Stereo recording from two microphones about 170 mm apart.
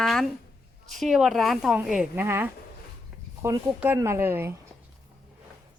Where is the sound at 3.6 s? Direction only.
10° right (ahead or behind).